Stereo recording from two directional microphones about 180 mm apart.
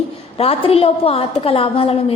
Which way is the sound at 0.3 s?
35° left (ahead or behind).